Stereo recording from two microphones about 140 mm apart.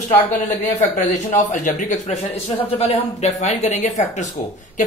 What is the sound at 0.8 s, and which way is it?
A man's voice, 60° left (ahead or behind).